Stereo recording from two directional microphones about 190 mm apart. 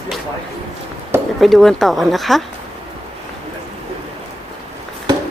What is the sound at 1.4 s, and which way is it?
Speech, centre (ahead or behind).